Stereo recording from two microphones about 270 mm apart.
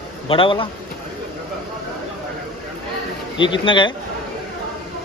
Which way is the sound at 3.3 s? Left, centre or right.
Centre.